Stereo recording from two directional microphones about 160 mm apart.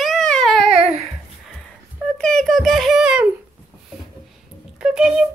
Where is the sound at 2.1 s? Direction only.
5° left (ahead or behind).